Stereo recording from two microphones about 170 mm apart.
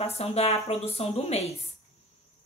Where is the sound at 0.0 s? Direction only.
35° left (ahead or behind).